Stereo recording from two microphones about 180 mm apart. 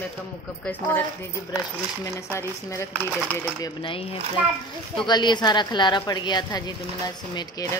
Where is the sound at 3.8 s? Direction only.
30° left (ahead or behind).